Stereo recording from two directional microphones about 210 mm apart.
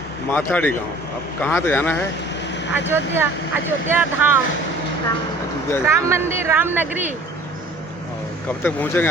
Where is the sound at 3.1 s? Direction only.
10° right (ahead or behind).